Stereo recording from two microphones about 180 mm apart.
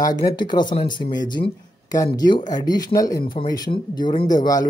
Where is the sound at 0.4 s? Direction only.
25° left (ahead or behind).